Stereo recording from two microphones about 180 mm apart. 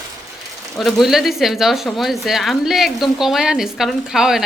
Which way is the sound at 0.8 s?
Centre (ahead or behind).